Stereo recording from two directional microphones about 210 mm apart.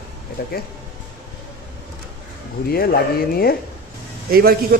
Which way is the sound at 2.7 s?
45° left (ahead or behind).